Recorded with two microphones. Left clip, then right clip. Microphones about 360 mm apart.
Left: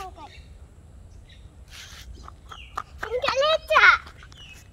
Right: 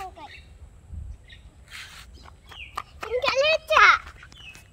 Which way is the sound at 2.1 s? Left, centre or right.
Right.